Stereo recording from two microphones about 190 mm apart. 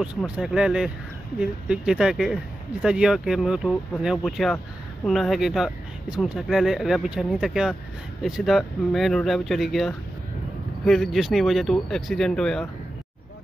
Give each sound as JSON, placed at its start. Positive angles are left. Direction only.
{"t": 0.2, "sound": "speech", "side_deg": -5}